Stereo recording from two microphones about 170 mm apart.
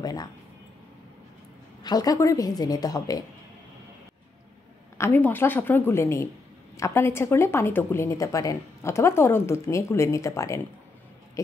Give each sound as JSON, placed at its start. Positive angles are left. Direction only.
{"t": 0.0, "sound": "speech", "side_deg": 20}
{"t": 1.8, "sound": "a woman's voice", "side_deg": 25}
{"t": 4.9, "sound": "a woman's voice", "side_deg": 15}